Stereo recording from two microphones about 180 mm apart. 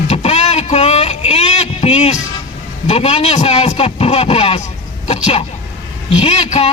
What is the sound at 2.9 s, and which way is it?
A man's voice, 35° left (ahead or behind).